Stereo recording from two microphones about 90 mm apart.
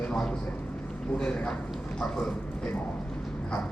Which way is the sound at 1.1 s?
10° left (ahead or behind).